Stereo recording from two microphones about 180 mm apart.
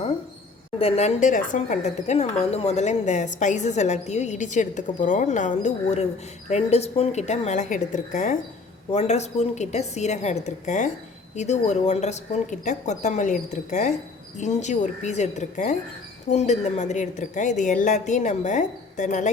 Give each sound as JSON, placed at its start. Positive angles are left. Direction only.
{"t": 0.8, "sound": "speech", "side_deg": 35}